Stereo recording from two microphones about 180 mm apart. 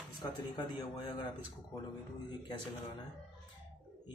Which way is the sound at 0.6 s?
25° left (ahead or behind).